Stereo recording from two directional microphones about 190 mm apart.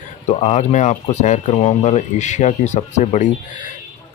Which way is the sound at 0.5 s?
35° left (ahead or behind).